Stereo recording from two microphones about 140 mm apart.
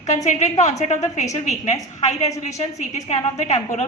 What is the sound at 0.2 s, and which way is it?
A woman's voice, 55° left (ahead or behind).